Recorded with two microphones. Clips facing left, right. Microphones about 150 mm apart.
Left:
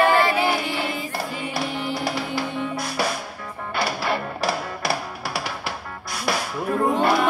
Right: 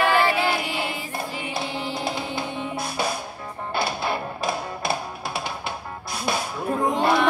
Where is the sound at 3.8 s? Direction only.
70° left (ahead or behind).